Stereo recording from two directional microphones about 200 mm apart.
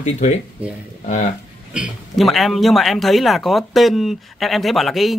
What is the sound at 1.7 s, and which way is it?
Speech, 5° right (ahead or behind).